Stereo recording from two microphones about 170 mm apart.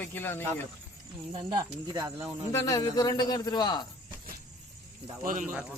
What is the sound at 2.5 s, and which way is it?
A man's voice, 20° left (ahead or behind).